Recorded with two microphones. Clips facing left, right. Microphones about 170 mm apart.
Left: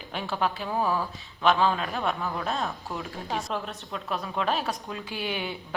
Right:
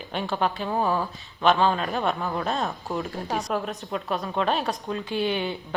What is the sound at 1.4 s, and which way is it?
A woman's voice, centre (ahead or behind).